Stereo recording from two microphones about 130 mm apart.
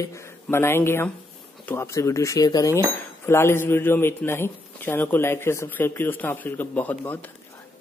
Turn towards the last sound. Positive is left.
turn(degrees=15)  # may be behind; listen again after turning